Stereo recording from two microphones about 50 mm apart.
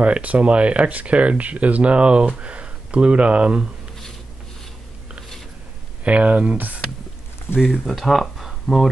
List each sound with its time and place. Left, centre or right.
0.0 s speech: right
6.0 s speech: right; by 8.8 s centre